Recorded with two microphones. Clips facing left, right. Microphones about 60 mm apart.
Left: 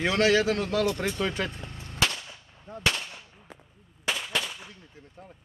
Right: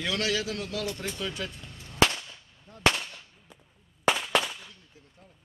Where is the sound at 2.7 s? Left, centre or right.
Left.